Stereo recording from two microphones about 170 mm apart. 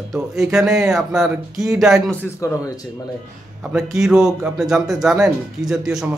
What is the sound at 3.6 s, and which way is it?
A man's voice, 5° right (ahead or behind).